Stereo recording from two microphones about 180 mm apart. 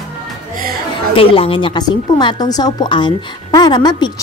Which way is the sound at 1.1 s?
30° left (ahead or behind).